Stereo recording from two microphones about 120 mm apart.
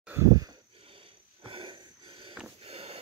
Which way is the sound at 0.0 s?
20° right (ahead or behind).